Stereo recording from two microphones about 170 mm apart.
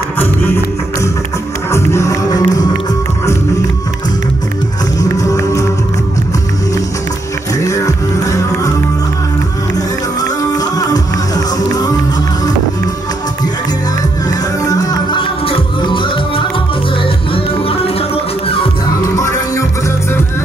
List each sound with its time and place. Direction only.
1.7 s music: 15° left (ahead or behind)
5.1 s music: 20° left (ahead or behind)
7.6 s music: 20° left (ahead or behind)
10.5 s music: 20° left (ahead or behind)
14.7 s music: 20° left (ahead or behind)
19.1 s music: 20° left (ahead or behind)